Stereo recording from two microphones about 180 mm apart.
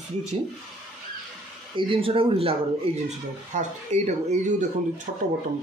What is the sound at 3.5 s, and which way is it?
Speech, 40° right (ahead or behind).